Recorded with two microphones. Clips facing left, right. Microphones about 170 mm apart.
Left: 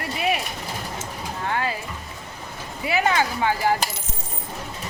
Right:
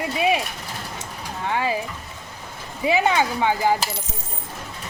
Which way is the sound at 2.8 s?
15° right (ahead or behind).